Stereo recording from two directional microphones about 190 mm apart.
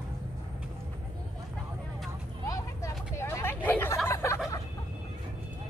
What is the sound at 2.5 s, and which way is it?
Hubbub, 15° left (ahead or behind).